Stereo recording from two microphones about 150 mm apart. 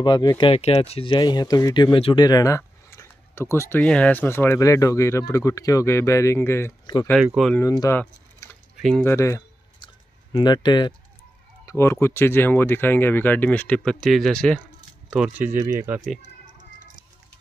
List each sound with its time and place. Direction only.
0.0 s speech: 25° left (ahead or behind)
0.5 s speech: 40° left (ahead or behind)
2.2 s a sound: 25° left (ahead or behind)
3.5 s speech: 15° left (ahead or behind)
7.3 s speech: 5° left (ahead or behind)
7.6 s speech: 25° left (ahead or behind)
7.9 s typing: 10° left (ahead or behind)
8.7 s a sound: 5° right (ahead or behind)
9.0 s speech: 15° left (ahead or behind)
10.3 s speech: 30° left (ahead or behind)
11.6 s speech: 20° left (ahead or behind)
15.0 s speech: 5° right (ahead or behind)
16.5 s a sound: 60° right (ahead or behind)